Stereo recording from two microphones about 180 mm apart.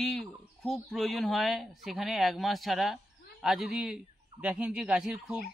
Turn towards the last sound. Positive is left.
turn(degrees=0)  # may be behind; listen again after turning